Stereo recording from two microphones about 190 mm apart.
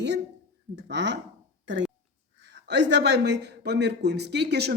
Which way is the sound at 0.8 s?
65° right (ahead or behind).